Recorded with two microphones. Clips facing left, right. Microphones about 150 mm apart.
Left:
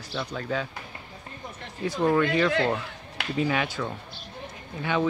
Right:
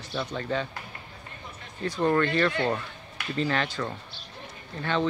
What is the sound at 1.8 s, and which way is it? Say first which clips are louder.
A man's voice: left 1 dB; 10° left (ahead or behind).